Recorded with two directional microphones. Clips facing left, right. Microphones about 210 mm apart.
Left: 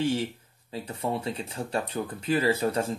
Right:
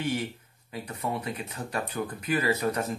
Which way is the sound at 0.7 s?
30° left (ahead or behind).